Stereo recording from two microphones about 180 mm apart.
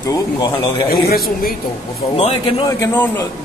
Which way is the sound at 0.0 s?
20° left (ahead or behind).